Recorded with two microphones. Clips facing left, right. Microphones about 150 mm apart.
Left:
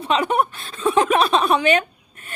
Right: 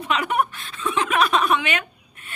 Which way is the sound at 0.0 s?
30° left (ahead or behind).